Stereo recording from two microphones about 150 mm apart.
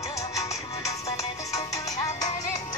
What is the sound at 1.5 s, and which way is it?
Music, 25° left (ahead or behind).